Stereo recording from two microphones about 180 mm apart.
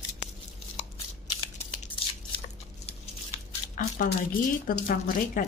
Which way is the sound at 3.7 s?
55° left (ahead or behind).